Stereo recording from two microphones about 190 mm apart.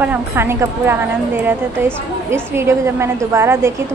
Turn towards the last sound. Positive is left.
turn(degrees=-15)  # may be behind; listen again after turning